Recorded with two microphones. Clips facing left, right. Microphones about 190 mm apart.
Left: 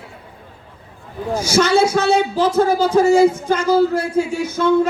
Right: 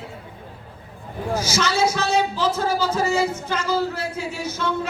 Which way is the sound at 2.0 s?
50° left (ahead or behind).